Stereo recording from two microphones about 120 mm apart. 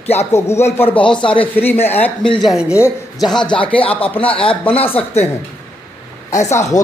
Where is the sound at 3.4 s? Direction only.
45° left (ahead or behind).